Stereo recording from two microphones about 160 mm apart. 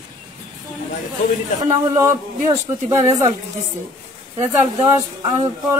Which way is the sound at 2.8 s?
20° right (ahead or behind).